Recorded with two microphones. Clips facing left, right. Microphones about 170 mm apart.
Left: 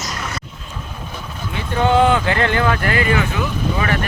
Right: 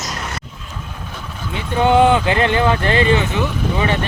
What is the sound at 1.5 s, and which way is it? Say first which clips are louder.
Speech: right 2 dB; 15° right (ahead or behind).